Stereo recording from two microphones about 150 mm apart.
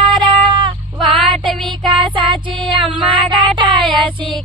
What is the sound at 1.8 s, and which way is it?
Music, 35° right (ahead or behind).